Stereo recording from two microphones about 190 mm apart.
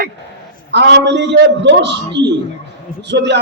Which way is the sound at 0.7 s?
60° right (ahead or behind).